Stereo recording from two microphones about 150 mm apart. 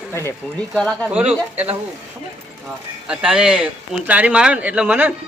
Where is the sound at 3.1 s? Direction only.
5° right (ahead or behind).